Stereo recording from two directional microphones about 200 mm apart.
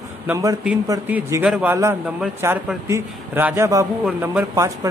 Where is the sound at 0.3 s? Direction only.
15° right (ahead or behind).